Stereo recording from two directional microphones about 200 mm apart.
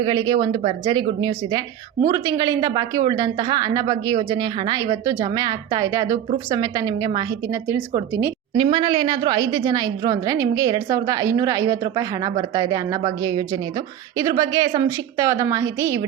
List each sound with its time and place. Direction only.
0.0 s a woman's voice: 20° right (ahead or behind)
8.5 s a woman's voice: 25° right (ahead or behind)